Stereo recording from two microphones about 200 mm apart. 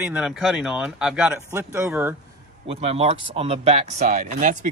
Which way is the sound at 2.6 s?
30° right (ahead or behind).